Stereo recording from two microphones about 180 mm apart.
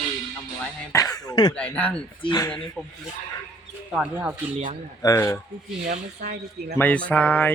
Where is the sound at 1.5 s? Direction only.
5° left (ahead or behind).